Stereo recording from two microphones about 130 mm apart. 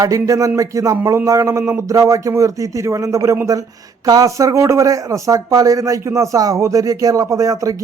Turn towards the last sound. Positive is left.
turn(degrees=-25)  # may be behind; listen again after turning